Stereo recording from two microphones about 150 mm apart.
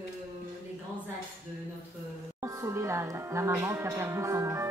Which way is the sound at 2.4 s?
20° right (ahead or behind).